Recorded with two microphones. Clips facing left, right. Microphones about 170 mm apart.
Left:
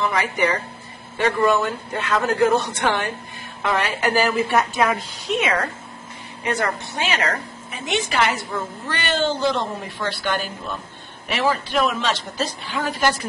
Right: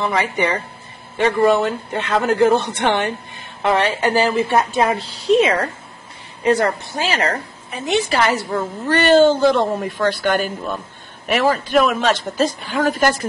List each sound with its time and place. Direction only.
0.0 s a woman's voice: 30° right (ahead or behind)
3.6 s a woman's voice: 30° right (ahead or behind)